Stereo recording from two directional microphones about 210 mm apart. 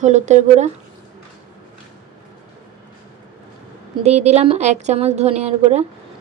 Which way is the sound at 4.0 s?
30° right (ahead or behind).